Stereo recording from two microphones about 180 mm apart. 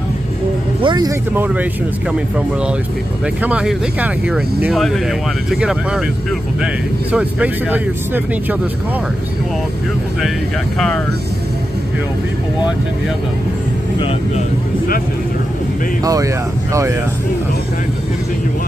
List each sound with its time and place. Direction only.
0.8 s speech: 25° right (ahead or behind)
1.3 s speech: 10° right (ahead or behind)
3.4 s speech: 10° right (ahead or behind)
16.0 s speech: 20° right (ahead or behind)